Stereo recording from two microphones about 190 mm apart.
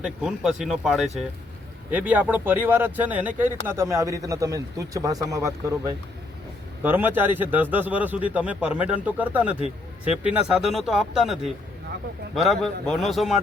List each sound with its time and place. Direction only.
0.0 s a man's voice: 5° right (ahead or behind)